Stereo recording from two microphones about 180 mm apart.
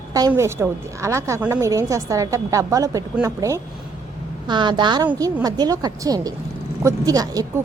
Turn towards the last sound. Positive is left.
turn(degrees=-20)  # may be behind; listen again after turning